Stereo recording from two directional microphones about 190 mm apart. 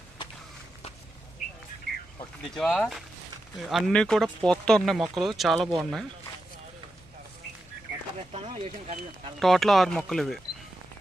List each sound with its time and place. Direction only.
2.4 s speech: centre (ahead or behind)
8.3 s speech: 35° right (ahead or behind)
9.4 s speech: centre (ahead or behind)